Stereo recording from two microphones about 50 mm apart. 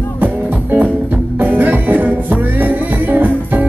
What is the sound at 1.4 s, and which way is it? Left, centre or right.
Music, right.